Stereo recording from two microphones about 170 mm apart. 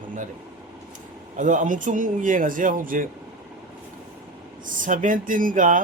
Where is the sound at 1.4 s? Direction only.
45° right (ahead or behind).